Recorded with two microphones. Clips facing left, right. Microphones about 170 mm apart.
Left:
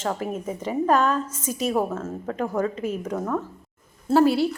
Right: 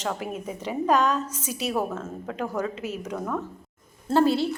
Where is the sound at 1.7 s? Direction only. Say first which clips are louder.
Left 2 dB; 10° left (ahead or behind).